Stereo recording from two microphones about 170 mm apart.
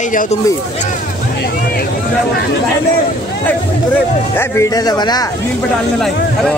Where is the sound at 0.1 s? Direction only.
50° left (ahead or behind).